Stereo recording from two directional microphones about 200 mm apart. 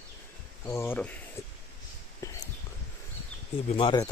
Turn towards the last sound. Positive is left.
turn(degrees=25)  # may be behind; listen again after turning